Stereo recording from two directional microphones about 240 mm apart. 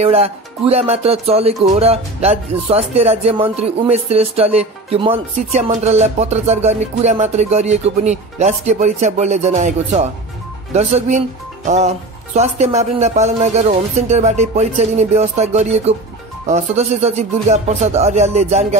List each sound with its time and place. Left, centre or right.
0.0 s music: right
10.7 s speech: right
12.4 s music: right